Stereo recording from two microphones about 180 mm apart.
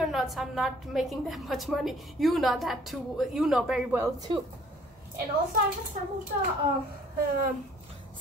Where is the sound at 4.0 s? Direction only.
20° right (ahead or behind).